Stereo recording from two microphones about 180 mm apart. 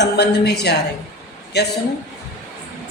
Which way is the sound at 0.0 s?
65° left (ahead or behind).